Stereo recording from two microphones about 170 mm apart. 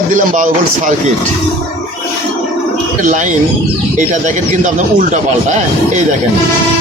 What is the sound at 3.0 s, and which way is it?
A man's voice, 50° right (ahead or behind).